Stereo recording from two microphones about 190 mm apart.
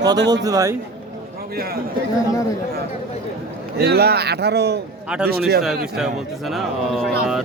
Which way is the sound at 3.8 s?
55° right (ahead or behind).